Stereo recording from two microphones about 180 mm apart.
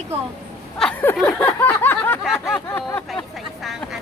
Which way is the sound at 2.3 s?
Centre (ahead or behind).